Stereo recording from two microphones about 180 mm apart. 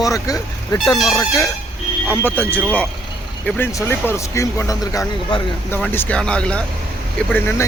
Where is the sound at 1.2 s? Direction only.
15° left (ahead or behind).